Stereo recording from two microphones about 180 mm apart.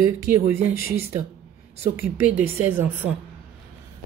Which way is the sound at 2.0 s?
10° right (ahead or behind).